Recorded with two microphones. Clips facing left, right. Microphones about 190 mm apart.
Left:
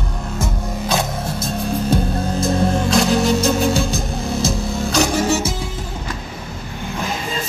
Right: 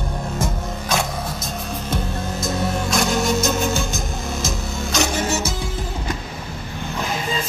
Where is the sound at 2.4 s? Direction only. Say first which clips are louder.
Left 5 dB; 30° left (ahead or behind).